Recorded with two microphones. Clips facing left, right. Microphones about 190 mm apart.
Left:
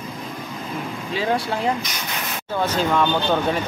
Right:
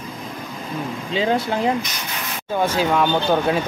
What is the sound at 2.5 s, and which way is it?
Speech, 10° right (ahead or behind).